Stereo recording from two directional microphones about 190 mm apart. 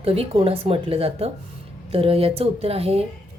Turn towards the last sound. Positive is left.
turn(degrees=-30)  # may be behind; listen again after turning